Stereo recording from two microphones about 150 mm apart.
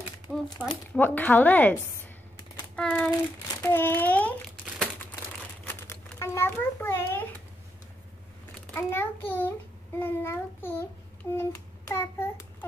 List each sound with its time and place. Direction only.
0.3 s crumpling: 5° right (ahead or behind)
0.7 s speech: 10° left (ahead or behind)
2.7 s child singing: 5° left (ahead or behind)
3.6 s a sound: 15° left (ahead or behind)
5.7 s a child's voice: 15° left (ahead or behind)
8.7 s speech: 15° left (ahead or behind)
11.9 s speech: 20° left (ahead or behind)